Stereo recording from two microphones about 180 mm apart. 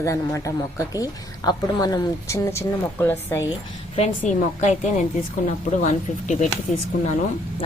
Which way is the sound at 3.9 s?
40° left (ahead or behind).